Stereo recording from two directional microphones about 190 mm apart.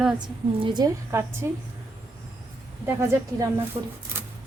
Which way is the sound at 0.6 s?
25° right (ahead or behind).